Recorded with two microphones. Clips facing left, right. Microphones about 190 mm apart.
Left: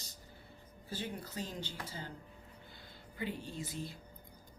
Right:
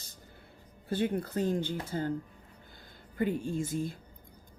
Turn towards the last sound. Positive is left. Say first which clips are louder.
# right 10 dB
turn(degrees=-50)  # may be behind; listen again after turning